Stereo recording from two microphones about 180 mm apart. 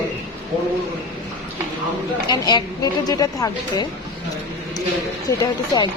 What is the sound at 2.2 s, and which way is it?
Speech, 25° left (ahead or behind).